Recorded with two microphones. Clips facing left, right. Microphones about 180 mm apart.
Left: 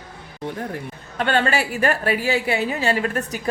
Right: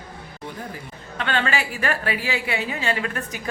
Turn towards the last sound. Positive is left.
turn(degrees=35)  # may be behind; listen again after turning